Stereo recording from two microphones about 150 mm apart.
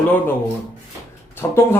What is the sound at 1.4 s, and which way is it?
Speech, 15° left (ahead or behind).